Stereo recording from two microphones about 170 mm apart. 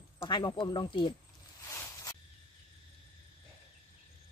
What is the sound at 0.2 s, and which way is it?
Speech, 25° left (ahead or behind).